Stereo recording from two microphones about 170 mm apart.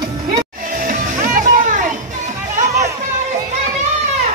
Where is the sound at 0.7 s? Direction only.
50° right (ahead or behind).